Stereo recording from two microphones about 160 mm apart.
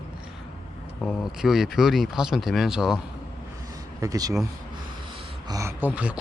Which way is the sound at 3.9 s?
20° right (ahead or behind).